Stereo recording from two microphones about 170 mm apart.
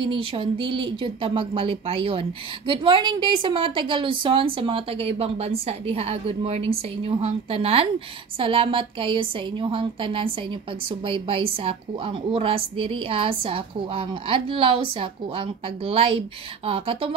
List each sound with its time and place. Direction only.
0.0 s a woman's voice: 30° right (ahead or behind)